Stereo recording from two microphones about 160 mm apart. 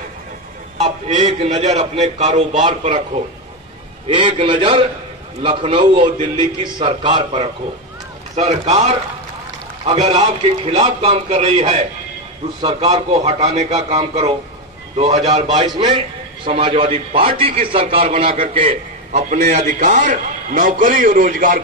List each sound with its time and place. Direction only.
0.7 s a man's voice: 40° right (ahead or behind)
4.1 s a man's voice: 30° right (ahead or behind)
8.4 s a man's voice: 45° right (ahead or behind)
15.6 s a man's voice: 25° right (ahead or behind)
19.6 s a man's voice: 50° right (ahead or behind)